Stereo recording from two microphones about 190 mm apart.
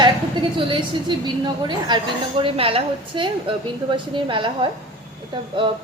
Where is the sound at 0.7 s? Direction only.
25° right (ahead or behind).